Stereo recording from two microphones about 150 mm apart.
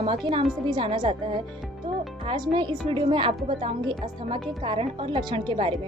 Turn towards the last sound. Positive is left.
turn(degrees=-35)  # may be behind; listen again after turning